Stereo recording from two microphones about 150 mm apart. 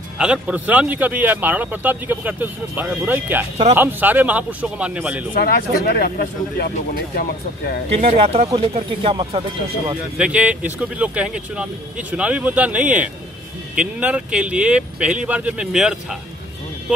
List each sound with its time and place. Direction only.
0.2 s a man's voice: 10° right (ahead or behind)
5.4 s speech: 90° left
7.9 s speech: 40° right (ahead or behind)
10.1 s a man's voice: 10° right (ahead or behind)